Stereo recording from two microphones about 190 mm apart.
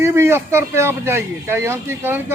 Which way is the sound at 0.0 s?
15° right (ahead or behind).